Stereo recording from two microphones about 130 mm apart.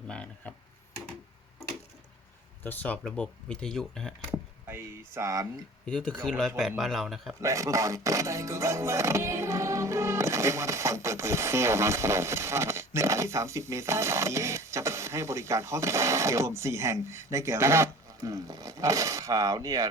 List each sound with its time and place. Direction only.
0.1 s speech: 10° left (ahead or behind)
2.6 s speech: 10° left (ahead or behind)
4.3 s chop: 15° right (ahead or behind)
5.8 s speech: 5° left (ahead or behind)
7.4 s music: 25° right (ahead or behind)